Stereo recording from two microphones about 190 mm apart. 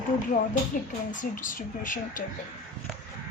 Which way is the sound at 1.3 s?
45° left (ahead or behind).